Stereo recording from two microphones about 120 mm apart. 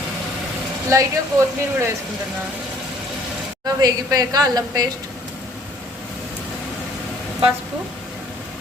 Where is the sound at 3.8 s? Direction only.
30° right (ahead or behind).